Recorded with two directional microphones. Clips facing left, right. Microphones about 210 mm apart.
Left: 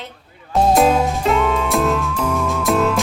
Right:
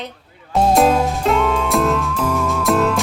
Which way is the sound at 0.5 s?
Centre (ahead or behind).